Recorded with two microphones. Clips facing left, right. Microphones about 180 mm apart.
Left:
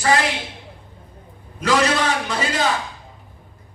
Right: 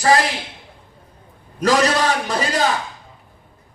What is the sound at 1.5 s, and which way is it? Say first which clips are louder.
Speech: right 2 dB; 40° right (ahead or behind).